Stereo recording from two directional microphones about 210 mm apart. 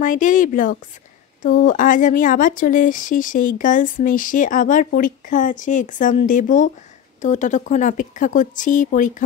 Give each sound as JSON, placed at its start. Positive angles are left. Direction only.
{"t": 0.0, "sound": "speech", "side_deg": 40}